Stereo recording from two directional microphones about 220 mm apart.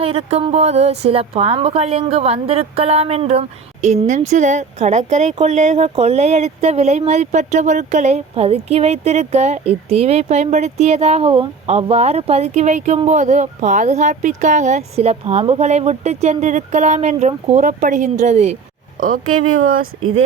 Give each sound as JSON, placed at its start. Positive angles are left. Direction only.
{"t": 0.0, "sound": "a woman's voice", "side_deg": -25}
{"t": 19.5, "sound": "speech", "side_deg": -70}